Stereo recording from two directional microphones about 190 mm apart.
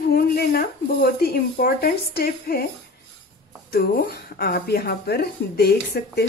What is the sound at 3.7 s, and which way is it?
A woman's voice, 55° left (ahead or behind).